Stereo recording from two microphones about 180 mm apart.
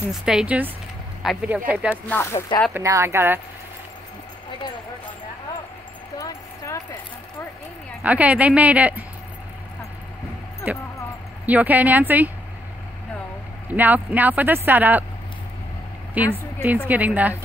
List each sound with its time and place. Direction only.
0.1 s speech: 5° right (ahead or behind)
2.0 s speech: 15° left (ahead or behind)
2.7 s speech: 15° right (ahead or behind)
6.1 s a sound: 15° left (ahead or behind)
8.0 s speech: 10° right (ahead or behind)
10.7 s speech: 10° right (ahead or behind)
13.7 s speech: 10° right (ahead or behind)
16.6 s speech: 10° right (ahead or behind)